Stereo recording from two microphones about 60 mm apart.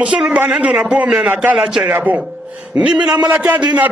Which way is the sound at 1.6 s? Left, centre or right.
Centre.